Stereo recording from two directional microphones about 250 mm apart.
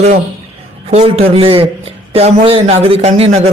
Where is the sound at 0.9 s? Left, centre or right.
Right.